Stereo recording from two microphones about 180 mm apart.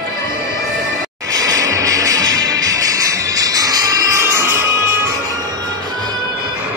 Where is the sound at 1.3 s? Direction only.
20° right (ahead or behind).